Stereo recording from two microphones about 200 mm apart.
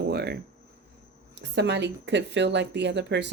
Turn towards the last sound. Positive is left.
turn(degrees=-60)  # may be behind; listen again after turning